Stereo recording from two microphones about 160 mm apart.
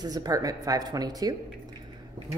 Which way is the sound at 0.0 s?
25° right (ahead or behind).